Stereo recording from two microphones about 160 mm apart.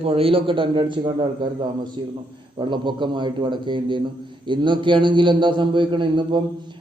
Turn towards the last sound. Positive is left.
turn(degrees=-30)  # may be behind; listen again after turning